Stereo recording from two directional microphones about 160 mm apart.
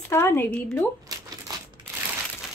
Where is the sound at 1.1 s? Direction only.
25° right (ahead or behind).